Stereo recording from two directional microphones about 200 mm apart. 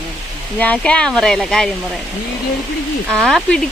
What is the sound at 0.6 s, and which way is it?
Speech, 5° left (ahead or behind).